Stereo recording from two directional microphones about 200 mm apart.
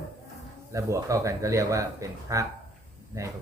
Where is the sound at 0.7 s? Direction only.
15° right (ahead or behind).